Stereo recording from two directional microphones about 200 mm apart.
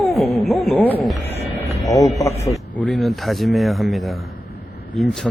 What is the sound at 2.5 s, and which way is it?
Speech, 5° left (ahead or behind).